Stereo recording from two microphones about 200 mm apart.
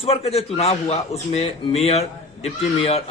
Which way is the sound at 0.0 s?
30° left (ahead or behind).